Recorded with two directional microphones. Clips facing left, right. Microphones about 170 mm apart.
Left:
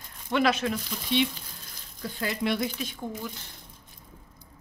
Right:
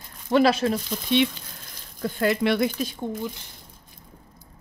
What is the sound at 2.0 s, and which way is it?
Speech, 60° right (ahead or behind).